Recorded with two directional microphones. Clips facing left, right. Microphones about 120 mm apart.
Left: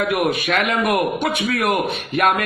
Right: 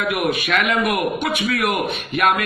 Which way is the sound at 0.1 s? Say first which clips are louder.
Left 1 dB; 40° left (ahead or behind).